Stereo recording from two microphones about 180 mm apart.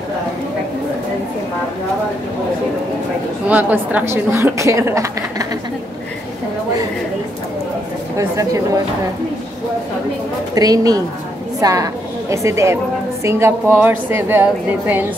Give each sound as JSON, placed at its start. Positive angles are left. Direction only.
{"t": 3.4, "sound": "a woman's voice", "side_deg": -10}
{"t": 8.2, "sound": "a woman's voice", "side_deg": -15}
{"t": 10.5, "sound": "a woman's voice", "side_deg": -20}